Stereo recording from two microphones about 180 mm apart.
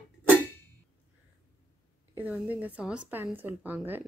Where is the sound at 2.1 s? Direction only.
10° right (ahead or behind).